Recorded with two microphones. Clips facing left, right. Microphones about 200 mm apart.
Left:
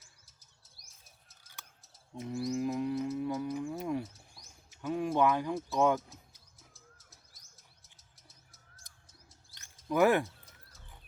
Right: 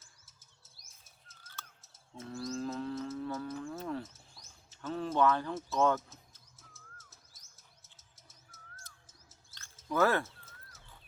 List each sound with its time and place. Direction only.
1.5 s bird: centre (ahead or behind)
2.1 s livestock: 15° left (ahead or behind)
5.7 s speech: 15° left (ahead or behind)
7.1 s chirp: centre (ahead or behind)
9.9 s speech: 15° left (ahead or behind)